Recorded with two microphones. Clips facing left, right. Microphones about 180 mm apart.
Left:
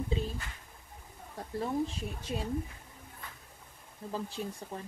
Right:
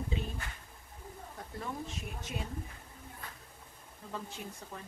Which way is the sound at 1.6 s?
30° left (ahead or behind).